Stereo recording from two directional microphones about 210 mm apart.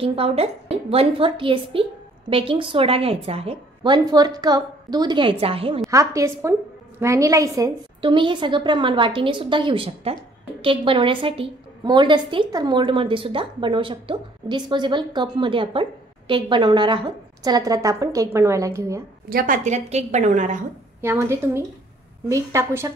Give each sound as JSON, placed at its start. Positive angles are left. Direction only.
{"t": 0.0, "sound": "a woman's voice", "side_deg": -25}
{"t": 5.9, "sound": "a woman's voice", "side_deg": -15}
{"t": 19.2, "sound": "a woman's voice", "side_deg": -45}
{"t": 21.0, "sound": "a woman's voice", "side_deg": -10}